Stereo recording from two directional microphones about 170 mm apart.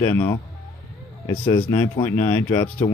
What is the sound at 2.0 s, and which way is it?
Speech, 15° left (ahead or behind).